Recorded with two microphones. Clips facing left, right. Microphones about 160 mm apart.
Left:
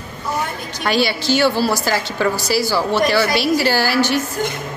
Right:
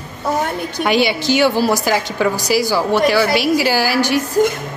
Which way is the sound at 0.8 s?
20° right (ahead or behind).